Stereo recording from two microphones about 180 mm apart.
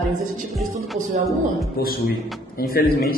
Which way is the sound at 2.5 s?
55° left (ahead or behind).